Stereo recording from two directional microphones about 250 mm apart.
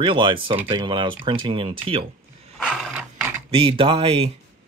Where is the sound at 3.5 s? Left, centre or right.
Centre.